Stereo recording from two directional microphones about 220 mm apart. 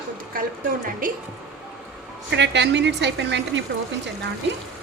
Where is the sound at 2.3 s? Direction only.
50° right (ahead or behind).